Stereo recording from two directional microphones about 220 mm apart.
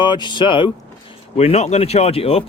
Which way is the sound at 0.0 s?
20° left (ahead or behind).